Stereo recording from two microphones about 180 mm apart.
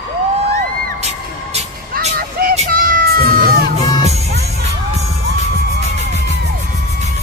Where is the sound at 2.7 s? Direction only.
50° right (ahead or behind).